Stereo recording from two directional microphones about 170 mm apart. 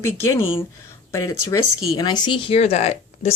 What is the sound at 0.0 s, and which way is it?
Speech, 15° left (ahead or behind).